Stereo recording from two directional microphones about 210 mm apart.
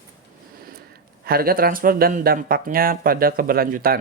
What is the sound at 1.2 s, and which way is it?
Speech, 45° right (ahead or behind).